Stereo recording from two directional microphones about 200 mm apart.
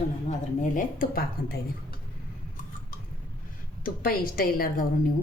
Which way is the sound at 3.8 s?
45° left (ahead or behind).